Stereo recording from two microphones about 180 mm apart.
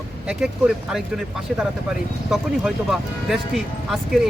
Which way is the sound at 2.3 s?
Centre (ahead or behind).